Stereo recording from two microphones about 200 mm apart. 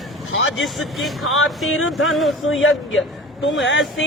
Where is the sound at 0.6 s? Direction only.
Centre (ahead or behind).